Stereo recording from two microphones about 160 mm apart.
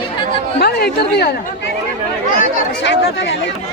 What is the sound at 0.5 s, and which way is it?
Speech, 85° left.